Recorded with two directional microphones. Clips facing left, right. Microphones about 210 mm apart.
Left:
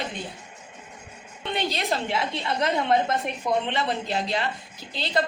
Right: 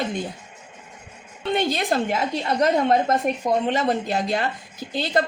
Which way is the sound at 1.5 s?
50° right (ahead or behind).